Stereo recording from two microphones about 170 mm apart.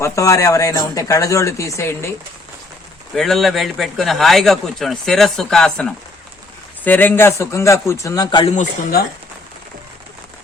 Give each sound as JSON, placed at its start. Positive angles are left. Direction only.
{"t": 0.0, "sound": "speech", "side_deg": 20}
{"t": 3.2, "sound": "a man's voice", "side_deg": 0}